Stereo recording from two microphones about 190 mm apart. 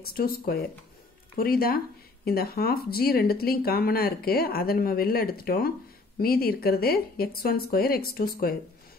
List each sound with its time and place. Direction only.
0.0 s speech: 55° left (ahead or behind)